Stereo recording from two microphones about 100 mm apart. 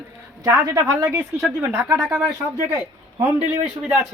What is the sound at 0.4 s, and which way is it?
Speech, 40° right (ahead or behind).